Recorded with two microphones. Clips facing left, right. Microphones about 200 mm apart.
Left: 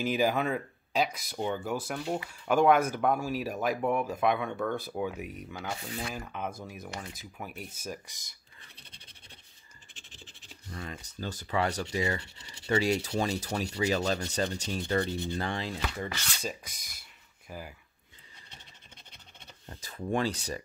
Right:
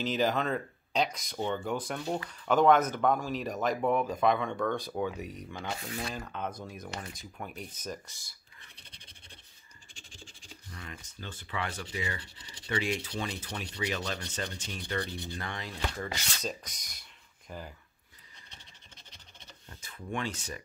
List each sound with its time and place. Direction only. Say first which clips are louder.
0.0 s speech: left 2 dB; 10° left (ahead or behind)
9.9 s scratch: right 1 dB; 5° left (ahead or behind)
10.7 s sanding: left 6 dB; 35° left (ahead or behind)
12.4 s speech: left 5 dB; 25° left (ahead or behind)
13.2 s sanding: left 7 dB; 40° left (ahead or behind)
16.3 s speech: even; 5° left (ahead or behind)
19.7 s sanding: left 6 dB; 40° left (ahead or behind)